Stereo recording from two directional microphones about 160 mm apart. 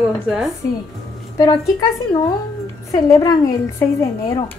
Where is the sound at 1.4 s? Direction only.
25° left (ahead or behind).